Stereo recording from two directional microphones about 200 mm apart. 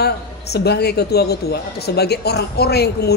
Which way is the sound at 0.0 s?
55° left (ahead or behind).